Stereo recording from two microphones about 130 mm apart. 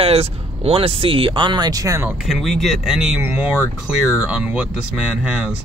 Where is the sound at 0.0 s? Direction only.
50° right (ahead or behind); by 2.0 s 25° right (ahead or behind).